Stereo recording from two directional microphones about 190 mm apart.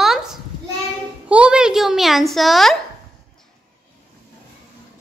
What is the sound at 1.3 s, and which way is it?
A child's voice, 5° right (ahead or behind).